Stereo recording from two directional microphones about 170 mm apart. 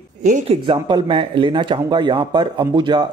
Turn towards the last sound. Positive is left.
turn(degrees=-25)  # may be behind; listen again after turning